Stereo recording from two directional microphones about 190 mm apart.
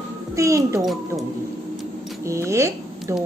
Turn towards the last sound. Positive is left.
turn(degrees=-15)  # may be behind; listen again after turning